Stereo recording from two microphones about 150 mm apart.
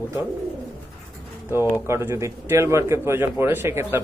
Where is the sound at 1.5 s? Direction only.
15° right (ahead or behind).